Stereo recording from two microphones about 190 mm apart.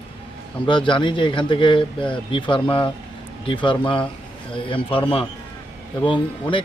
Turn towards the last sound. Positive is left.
turn(degrees=25)  # may be behind; listen again after turning